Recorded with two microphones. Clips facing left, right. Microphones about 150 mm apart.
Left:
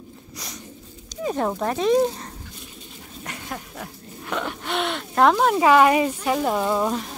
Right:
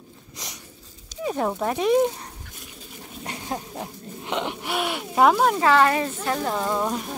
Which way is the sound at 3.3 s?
30° right (ahead or behind).